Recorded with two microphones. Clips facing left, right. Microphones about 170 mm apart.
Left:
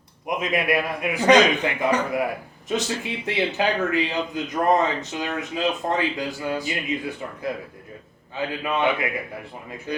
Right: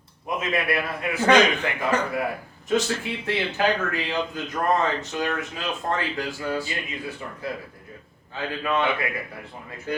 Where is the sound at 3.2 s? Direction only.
20° left (ahead or behind).